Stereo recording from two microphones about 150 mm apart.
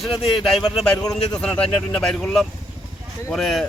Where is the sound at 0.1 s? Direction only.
40° left (ahead or behind).